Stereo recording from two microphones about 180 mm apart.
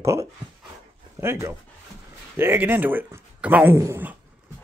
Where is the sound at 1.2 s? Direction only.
15° right (ahead or behind).